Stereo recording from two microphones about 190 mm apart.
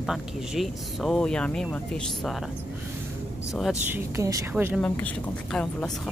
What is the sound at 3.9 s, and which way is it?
Speech, 15° right (ahead or behind).